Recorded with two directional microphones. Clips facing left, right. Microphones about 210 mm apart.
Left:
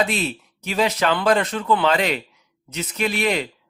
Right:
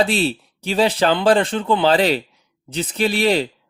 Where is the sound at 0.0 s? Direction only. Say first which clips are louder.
Right 4 dB; 30° right (ahead or behind).